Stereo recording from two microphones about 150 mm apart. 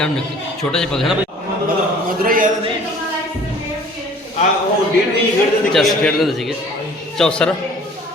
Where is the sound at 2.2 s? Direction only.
65° right (ahead or behind).